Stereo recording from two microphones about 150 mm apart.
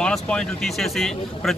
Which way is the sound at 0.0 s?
5° left (ahead or behind).